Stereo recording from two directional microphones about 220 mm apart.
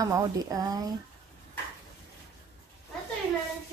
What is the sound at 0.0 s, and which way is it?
Speech, 15° right (ahead or behind).